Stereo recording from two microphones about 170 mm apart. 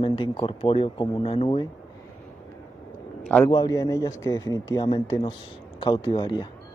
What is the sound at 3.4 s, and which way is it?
A man's voice, 20° left (ahead or behind).